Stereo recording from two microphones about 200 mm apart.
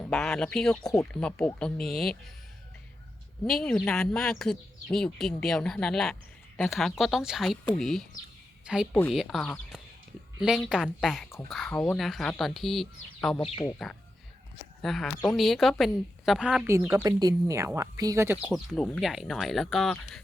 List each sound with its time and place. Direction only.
0.0 s speech: 5° left (ahead or behind)
3.4 s speech: centre (ahead or behind); by 18.3 s 15° right (ahead or behind)
18.4 s speech: centre (ahead or behind)